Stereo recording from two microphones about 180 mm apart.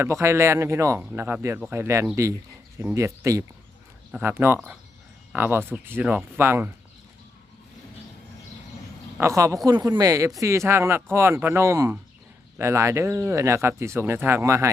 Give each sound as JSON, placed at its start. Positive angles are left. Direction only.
{"t": 0.0, "sound": "speech", "side_deg": -15}
{"t": 9.2, "sound": "speech", "side_deg": -15}